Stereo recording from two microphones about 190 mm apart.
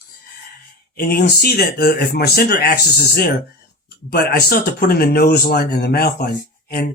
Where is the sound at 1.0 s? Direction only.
50° left (ahead or behind).